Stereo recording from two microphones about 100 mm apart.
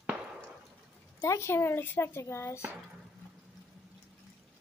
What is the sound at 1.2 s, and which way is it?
Speech, 30° left (ahead or behind).